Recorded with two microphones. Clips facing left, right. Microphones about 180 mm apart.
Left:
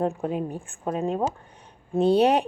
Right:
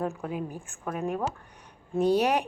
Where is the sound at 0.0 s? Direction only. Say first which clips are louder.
Left 5 dB; 30° left (ahead or behind).